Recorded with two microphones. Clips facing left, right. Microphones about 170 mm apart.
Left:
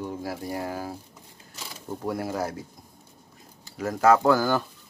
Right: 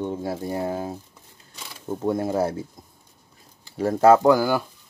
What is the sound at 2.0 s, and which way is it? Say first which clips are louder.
Speech: right 6 dB; 25° right (ahead or behind).